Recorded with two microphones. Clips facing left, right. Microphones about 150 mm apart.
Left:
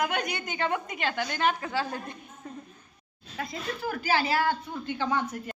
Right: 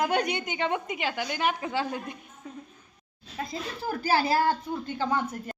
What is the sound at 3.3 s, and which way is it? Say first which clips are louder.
Speech: even; 35° right (ahead or behind).